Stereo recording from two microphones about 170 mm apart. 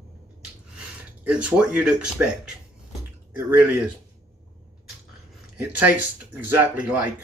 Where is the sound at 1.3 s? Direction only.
5° right (ahead or behind).